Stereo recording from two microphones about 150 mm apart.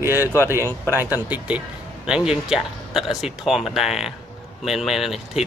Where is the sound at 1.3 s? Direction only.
10° right (ahead or behind).